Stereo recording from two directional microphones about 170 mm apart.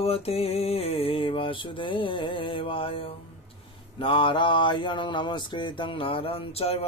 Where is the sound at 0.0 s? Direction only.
35° left (ahead or behind).